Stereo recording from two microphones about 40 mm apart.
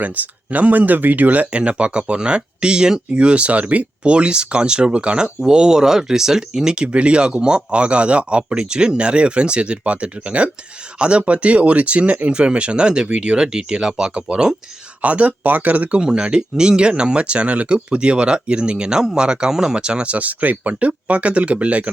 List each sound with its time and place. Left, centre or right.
0.0 s speech: right
1.5 s speech: right; by 6.7 s centre
6.7 s speech: right
15.0 s speech: right
16.0 s speech: right